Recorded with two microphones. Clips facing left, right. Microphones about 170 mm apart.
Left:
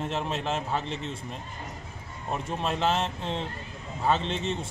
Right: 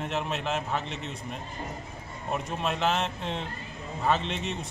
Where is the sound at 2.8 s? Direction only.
30° left (ahead or behind).